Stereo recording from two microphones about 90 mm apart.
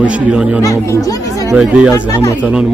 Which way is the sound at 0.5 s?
35° left (ahead or behind).